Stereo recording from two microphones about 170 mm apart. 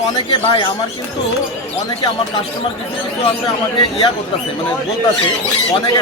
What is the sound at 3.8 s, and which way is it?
Speech, 35° left (ahead or behind).